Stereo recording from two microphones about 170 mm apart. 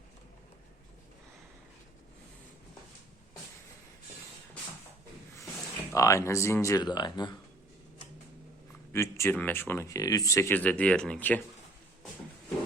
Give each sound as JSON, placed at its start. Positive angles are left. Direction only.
{"t": 5.9, "sound": "speech", "side_deg": 20}
{"t": 8.9, "sound": "speech", "side_deg": 15}